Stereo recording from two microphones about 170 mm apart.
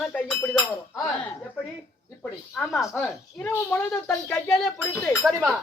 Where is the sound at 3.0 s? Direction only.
15° left (ahead or behind).